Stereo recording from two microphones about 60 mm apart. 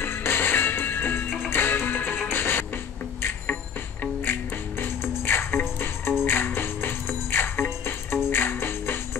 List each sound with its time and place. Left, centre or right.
0.0 s music: left